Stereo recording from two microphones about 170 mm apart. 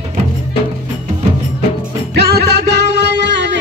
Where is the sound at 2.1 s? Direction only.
75° right (ahead or behind); by 3.5 s 90° right.